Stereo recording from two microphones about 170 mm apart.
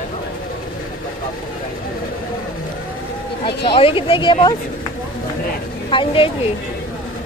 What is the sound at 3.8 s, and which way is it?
Speech, 30° left (ahead or behind).